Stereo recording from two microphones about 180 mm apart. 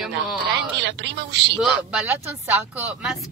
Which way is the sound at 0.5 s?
75° right (ahead or behind).